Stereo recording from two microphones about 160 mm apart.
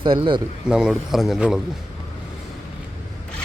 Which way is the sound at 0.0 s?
30° right (ahead or behind).